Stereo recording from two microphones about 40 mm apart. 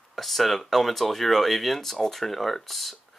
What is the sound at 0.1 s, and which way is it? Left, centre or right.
Speech, centre.